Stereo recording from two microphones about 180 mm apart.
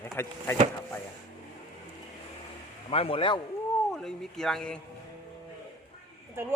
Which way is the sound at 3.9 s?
Centre (ahead or behind).